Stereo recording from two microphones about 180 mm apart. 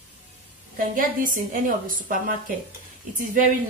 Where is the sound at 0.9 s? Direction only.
50° right (ahead or behind).